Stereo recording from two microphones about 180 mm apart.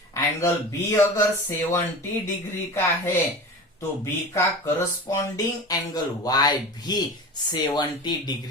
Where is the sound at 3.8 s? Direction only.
15° left (ahead or behind).